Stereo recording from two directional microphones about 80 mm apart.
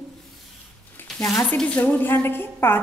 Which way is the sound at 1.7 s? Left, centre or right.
Left.